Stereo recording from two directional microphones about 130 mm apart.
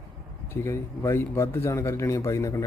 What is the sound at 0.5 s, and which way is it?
Speech, 20° left (ahead or behind).